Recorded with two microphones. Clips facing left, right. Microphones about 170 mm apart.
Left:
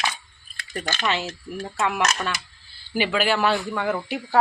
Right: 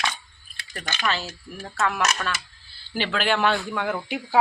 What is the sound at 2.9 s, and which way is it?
Speech, 10° left (ahead or behind).